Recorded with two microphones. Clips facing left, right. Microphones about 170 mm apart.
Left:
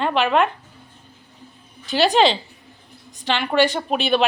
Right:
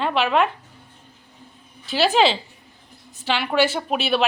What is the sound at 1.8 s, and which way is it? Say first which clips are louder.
A woman's voice: left 2 dB; centre (ahead or behind).